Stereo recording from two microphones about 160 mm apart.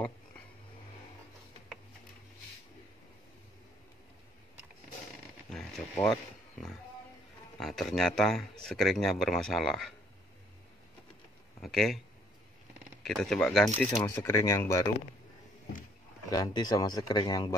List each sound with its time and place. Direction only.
5.5 s a sound: centre (ahead or behind)
7.5 s speech: centre (ahead or behind)
11.6 s speech: centre (ahead or behind)
13.0 s speech: 5° left (ahead or behind)
14.0 s a man's voice: 15° left (ahead or behind)
16.3 s a man's voice: 25° left (ahead or behind)